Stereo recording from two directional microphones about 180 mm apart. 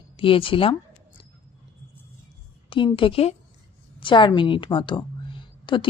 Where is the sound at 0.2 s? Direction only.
30° left (ahead or behind).